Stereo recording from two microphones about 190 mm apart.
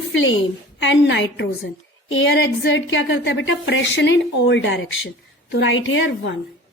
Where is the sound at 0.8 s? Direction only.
70° left (ahead or behind).